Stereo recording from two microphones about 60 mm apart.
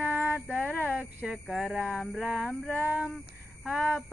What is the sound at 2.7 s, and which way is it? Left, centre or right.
Speech, right.